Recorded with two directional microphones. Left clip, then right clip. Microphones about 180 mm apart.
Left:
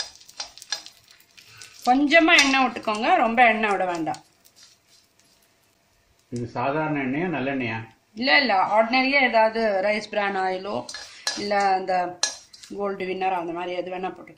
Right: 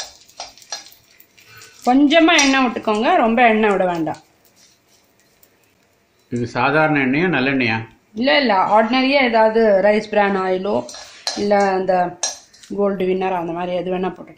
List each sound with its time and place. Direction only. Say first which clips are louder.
1.9 s a woman's voice: right 4 dB; 35° right (ahead or behind)
6.3 s speech: right 9 dB; 15° right (ahead or behind)
8.1 s a woman's voice: right 4 dB; 35° right (ahead or behind)